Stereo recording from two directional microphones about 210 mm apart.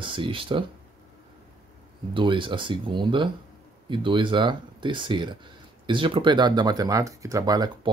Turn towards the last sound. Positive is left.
turn(degrees=-20)  # may be behind; listen again after turning